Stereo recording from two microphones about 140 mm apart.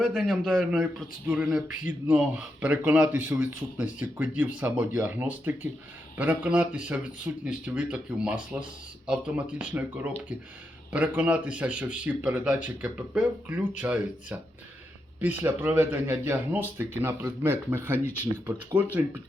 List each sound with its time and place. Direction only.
0.0 s speech: 5° right (ahead or behind)
15.4 s speech: 15° right (ahead or behind)
17.9 s speech: 15° left (ahead or behind)
18.8 s speech: 10° right (ahead or behind)